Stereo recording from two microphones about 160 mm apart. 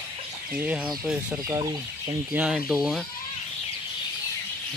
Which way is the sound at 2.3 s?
5° right (ahead or behind).